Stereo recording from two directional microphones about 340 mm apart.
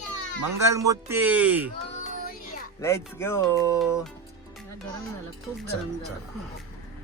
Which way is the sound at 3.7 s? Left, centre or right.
Centre.